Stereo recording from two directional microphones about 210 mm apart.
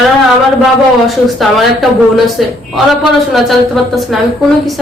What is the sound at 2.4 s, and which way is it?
A woman's voice, centre (ahead or behind).